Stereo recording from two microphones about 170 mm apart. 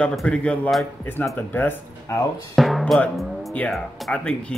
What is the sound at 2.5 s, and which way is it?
Speech, centre (ahead or behind).